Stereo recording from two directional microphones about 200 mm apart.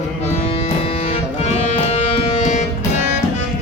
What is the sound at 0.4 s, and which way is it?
Music, 30° left (ahead or behind).